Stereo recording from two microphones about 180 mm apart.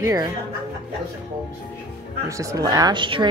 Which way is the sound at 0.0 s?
20° right (ahead or behind).